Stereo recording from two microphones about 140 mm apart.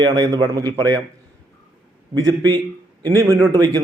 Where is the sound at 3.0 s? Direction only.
20° right (ahead or behind).